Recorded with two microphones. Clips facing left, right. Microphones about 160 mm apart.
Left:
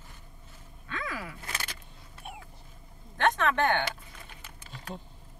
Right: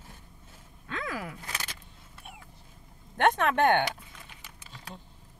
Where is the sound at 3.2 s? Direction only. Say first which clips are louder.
Right 2 dB; 55° right (ahead or behind).